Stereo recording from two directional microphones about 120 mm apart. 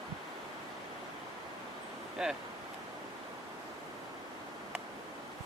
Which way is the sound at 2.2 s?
5° right (ahead or behind).